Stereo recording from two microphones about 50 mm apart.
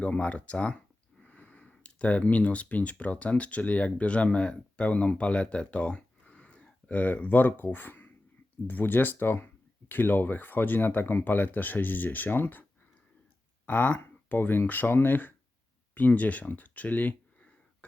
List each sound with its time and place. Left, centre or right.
0.0 s speech: left
1.2 s a sound: left
1.8 s speech: left
13.7 s speech: left
14.0 s speech: left